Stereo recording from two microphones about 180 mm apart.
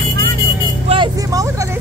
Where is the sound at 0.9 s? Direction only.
25° right (ahead or behind).